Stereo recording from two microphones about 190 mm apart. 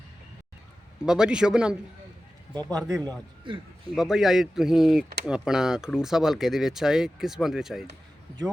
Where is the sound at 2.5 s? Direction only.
20° right (ahead or behind).